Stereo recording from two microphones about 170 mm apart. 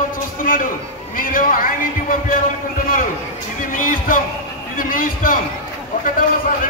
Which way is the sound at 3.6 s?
55° left (ahead or behind).